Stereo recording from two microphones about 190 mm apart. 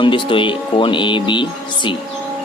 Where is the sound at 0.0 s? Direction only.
25° left (ahead or behind).